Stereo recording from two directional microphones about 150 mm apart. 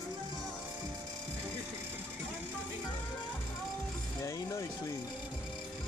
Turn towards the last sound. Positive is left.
turn(degrees=20)  # may be behind; listen again after turning